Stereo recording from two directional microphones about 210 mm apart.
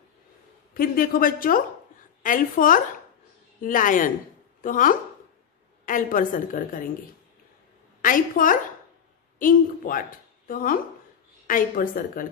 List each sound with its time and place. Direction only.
0.7 s a woman's voice: 45° left (ahead or behind)
8.0 s a woman's voice: 40° left (ahead or behind)